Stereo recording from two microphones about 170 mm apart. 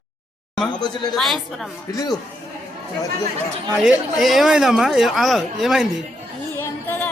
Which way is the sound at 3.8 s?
5° right (ahead or behind).